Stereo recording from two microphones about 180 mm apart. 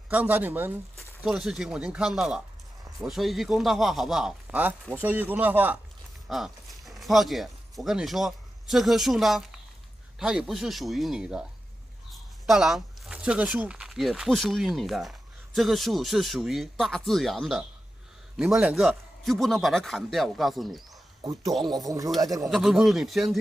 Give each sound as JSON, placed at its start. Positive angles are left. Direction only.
{"t": 0.1, "sound": "a man's voice", "side_deg": -10}
{"t": 21.6, "sound": "speech", "side_deg": -20}
{"t": 22.5, "sound": "a man's voice", "side_deg": 0}